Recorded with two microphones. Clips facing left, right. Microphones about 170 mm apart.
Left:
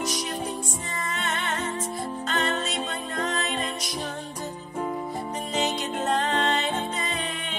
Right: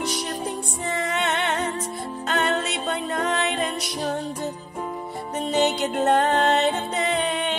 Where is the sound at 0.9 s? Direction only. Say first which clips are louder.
Right 7 dB; 65° right (ahead or behind).